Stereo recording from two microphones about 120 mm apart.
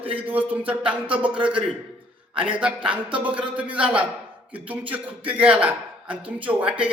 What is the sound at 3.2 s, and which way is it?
A man's voice, 10° right (ahead or behind).